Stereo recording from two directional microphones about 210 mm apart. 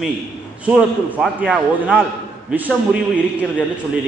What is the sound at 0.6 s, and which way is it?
A man's voice, 5° right (ahead or behind).